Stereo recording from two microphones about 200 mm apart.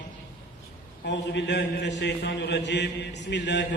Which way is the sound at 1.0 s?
60° left (ahead or behind).